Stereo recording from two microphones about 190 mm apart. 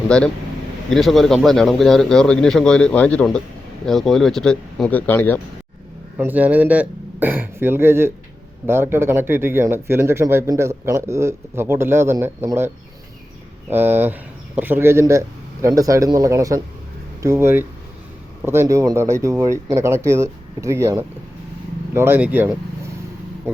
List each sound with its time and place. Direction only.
0.1 s a man's voice: 5° left (ahead or behind)
6.1 s speech: 10° right (ahead or behind)